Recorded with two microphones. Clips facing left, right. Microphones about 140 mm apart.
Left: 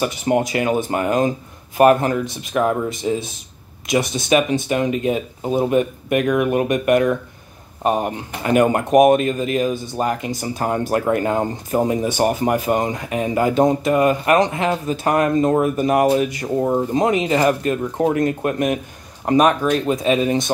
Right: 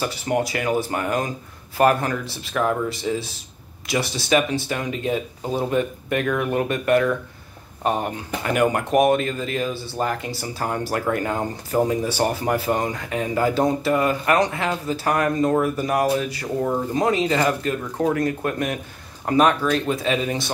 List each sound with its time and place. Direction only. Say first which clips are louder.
0.0 s speech: left 4 dB; 20° left (ahead or behind)